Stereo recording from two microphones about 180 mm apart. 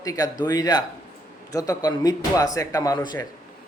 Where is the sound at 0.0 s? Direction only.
20° left (ahead or behind).